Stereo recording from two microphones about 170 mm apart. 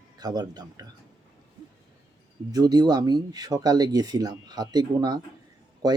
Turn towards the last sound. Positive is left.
turn(degrees=-25)  # may be behind; listen again after turning